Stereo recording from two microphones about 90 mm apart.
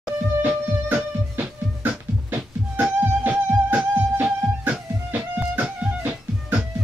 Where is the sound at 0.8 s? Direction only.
20° right (ahead or behind).